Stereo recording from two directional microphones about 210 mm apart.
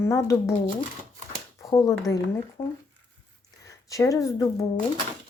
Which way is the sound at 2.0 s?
15° left (ahead or behind).